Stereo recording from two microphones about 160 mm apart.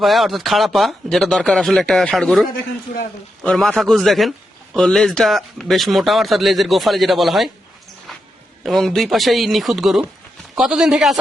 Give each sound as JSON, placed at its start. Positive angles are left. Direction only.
{"t": 0.0, "sound": "a man's voice", "side_deg": 0}
{"t": 8.6, "sound": "a man's voice", "side_deg": 0}